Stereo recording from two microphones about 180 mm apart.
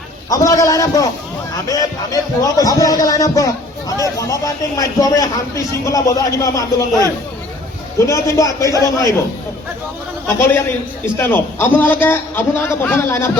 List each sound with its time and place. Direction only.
0.3 s a man's voice: 20° left (ahead or behind)
11.0 s a man's voice: 10° left (ahead or behind)